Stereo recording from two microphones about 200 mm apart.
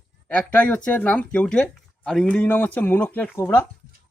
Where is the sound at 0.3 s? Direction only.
5° left (ahead or behind).